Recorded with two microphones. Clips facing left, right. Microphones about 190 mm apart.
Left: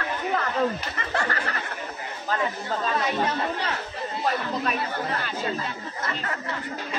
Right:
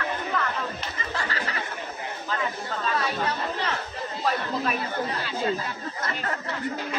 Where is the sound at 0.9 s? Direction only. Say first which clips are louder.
Left 3 dB; 60° left (ahead or behind).